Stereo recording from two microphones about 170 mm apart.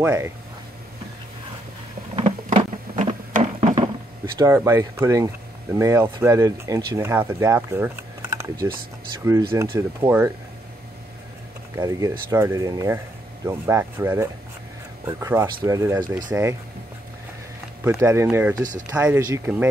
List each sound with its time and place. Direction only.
0.0 s speech: 15° right (ahead or behind)
2.1 s printer: 35° right (ahead or behind)
3.3 s a sound: 45° right (ahead or behind)
4.4 s speech: 15° right (ahead or behind)
9.8 s speech: 15° right (ahead or behind)
11.8 s speech: 20° right (ahead or behind)
17.8 s speech: 15° right (ahead or behind)
18.6 s speech: 50° right (ahead or behind)
18.9 s speech: 10° right (ahead or behind)